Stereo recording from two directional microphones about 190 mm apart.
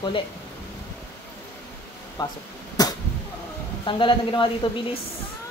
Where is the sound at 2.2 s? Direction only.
20° left (ahead or behind).